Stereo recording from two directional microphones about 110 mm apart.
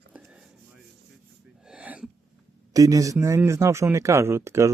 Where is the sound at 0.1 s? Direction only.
10° right (ahead or behind).